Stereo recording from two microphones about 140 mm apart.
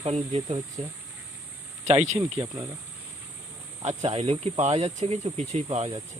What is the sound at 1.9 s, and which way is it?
Speech, 50° right (ahead or behind).